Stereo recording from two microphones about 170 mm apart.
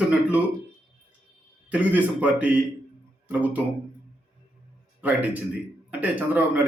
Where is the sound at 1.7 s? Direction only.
10° right (ahead or behind).